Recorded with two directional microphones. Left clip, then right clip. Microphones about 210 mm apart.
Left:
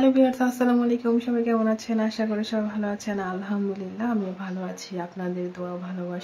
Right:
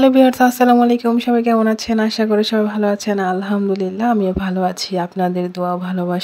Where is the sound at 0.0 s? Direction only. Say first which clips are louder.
Right 9 dB; 50° right (ahead or behind).